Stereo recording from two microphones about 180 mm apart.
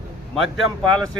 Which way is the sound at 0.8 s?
25° right (ahead or behind).